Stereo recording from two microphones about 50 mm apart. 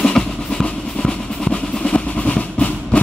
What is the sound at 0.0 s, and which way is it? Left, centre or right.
Vehicle, centre.